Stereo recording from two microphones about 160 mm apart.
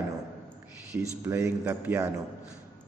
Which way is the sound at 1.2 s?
15° right (ahead or behind).